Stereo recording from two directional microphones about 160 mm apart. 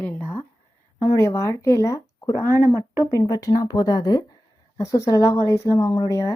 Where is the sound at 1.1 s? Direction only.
15° left (ahead or behind).